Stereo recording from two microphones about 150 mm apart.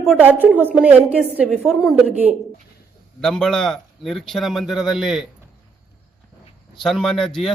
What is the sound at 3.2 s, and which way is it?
Speech, 5° left (ahead or behind).